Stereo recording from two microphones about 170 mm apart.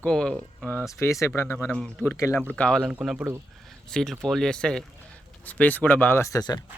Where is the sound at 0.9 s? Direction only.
15° left (ahead or behind).